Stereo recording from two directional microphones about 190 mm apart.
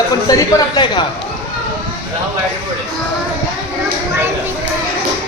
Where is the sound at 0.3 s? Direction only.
20° left (ahead or behind).